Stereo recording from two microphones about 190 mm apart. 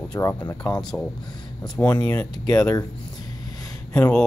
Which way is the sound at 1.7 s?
10° left (ahead or behind).